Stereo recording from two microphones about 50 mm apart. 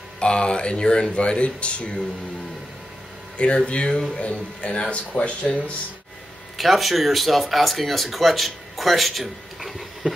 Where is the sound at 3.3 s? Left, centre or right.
Left.